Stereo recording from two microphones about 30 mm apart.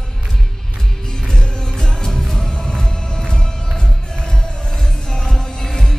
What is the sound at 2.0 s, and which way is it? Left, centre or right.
Music, centre.